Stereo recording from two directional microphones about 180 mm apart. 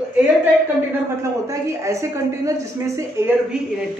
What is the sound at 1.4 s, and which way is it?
A woman's voice, 15° right (ahead or behind).